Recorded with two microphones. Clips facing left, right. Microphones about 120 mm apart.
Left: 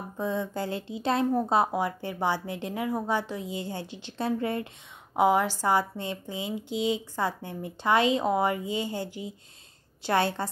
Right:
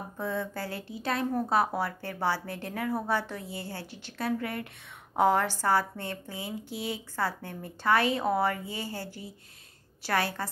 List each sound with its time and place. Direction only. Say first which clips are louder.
0.2 s a woman's voice: left 3 dB; 20° left (ahead or behind)
5.1 s a woman's voice: left 2 dB; 15° left (ahead or behind)